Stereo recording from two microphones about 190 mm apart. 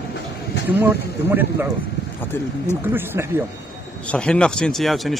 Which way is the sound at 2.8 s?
10° right (ahead or behind).